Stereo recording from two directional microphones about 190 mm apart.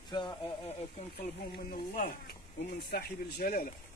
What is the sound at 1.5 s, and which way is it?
Speech, 50° left (ahead or behind).